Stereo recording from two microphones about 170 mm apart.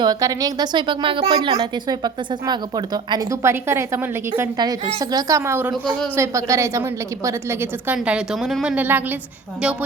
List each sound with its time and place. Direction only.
0.0 s a woman's voice: 20° right (ahead or behind)